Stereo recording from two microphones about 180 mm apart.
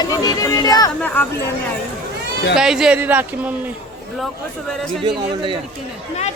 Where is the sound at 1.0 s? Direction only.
10° left (ahead or behind).